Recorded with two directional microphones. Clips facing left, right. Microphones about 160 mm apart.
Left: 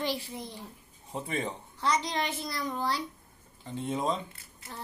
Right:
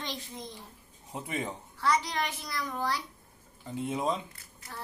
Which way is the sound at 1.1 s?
10° right (ahead or behind).